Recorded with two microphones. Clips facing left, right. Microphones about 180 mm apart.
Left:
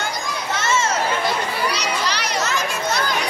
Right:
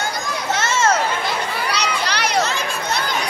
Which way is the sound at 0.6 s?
70° right (ahead or behind).